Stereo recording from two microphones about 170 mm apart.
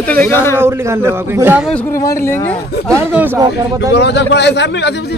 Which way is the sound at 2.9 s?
10° right (ahead or behind).